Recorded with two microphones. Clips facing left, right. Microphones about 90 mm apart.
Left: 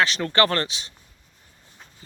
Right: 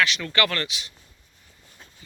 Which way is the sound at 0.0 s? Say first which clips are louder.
Left 3 dB; 35° left (ahead or behind).